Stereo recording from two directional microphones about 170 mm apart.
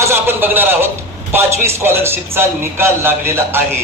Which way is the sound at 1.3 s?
15° right (ahead or behind).